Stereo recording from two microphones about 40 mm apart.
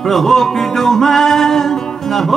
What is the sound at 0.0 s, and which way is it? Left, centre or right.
Music, centre.